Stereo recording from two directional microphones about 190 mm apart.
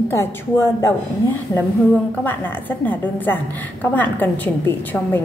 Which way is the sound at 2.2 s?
10° left (ahead or behind).